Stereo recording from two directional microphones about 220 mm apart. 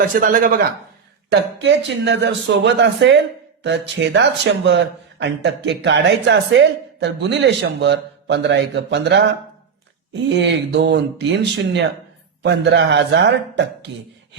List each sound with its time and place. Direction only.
0.2 s speech: 35° right (ahead or behind)
1.3 s speech: 55° right (ahead or behind)